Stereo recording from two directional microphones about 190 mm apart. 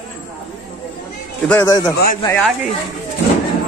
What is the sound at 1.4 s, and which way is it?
Speech, 15° left (ahead or behind).